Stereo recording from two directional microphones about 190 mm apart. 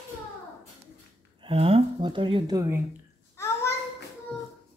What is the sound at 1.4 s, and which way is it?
Speech, 30° right (ahead or behind).